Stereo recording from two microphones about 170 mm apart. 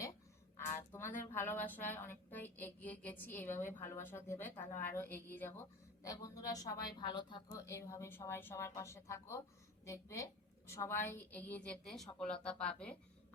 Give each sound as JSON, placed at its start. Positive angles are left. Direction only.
{"t": 1.3, "sound": "a woman's voice", "side_deg": 15}